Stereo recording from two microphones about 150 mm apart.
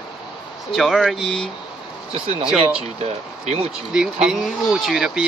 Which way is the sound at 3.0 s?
45° right (ahead or behind).